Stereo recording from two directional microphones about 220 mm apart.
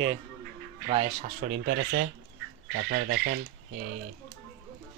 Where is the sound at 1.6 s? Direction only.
50° right (ahead or behind).